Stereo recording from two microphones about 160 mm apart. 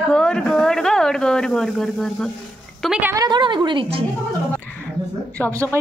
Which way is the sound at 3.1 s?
25° right (ahead or behind).